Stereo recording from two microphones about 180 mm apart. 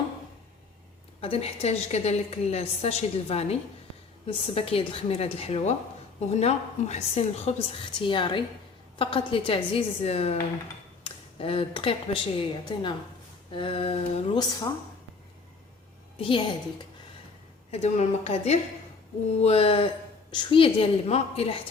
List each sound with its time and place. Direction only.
1.2 s a woman's voice: 35° left (ahead or behind)
16.1 s a woman's voice: 25° left (ahead or behind)
17.7 s a woman's voice: 35° left (ahead or behind)